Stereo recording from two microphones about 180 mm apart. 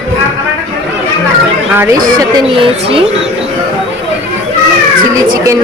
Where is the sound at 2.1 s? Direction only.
30° right (ahead or behind).